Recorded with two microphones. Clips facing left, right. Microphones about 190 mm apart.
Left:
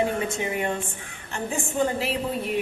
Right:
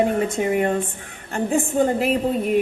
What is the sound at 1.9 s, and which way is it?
Speech, 50° right (ahead or behind).